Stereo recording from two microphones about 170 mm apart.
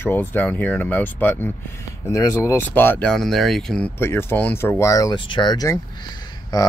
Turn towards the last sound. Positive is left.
turn(degrees=25)  # may be behind; listen again after turning